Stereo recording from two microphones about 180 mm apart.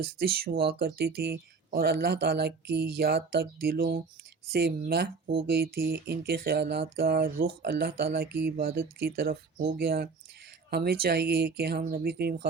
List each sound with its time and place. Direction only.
0.0 s speech: 55° right (ahead or behind)